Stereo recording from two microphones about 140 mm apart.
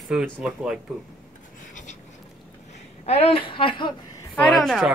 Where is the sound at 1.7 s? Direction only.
65° left (ahead or behind).